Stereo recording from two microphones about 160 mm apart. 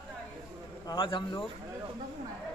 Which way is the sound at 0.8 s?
30° left (ahead or behind).